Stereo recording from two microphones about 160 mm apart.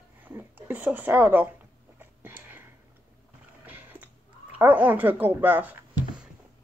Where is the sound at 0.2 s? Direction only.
15° right (ahead or behind).